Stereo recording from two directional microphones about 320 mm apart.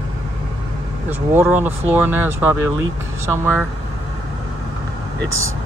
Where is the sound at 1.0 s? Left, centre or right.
Centre.